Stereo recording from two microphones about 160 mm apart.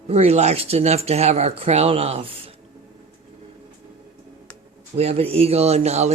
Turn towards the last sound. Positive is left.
turn(degrees=-45)  # may be behind; listen again after turning